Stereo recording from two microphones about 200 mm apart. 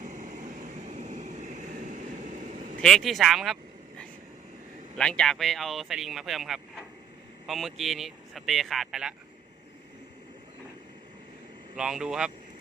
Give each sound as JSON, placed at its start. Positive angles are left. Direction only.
{"t": 0.0, "sound": "vehicle", "side_deg": -40}
{"t": 2.8, "sound": "speech", "side_deg": 0}
{"t": 11.8, "sound": "speech", "side_deg": -5}